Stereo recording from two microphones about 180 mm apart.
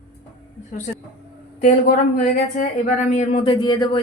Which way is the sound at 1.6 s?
45° left (ahead or behind).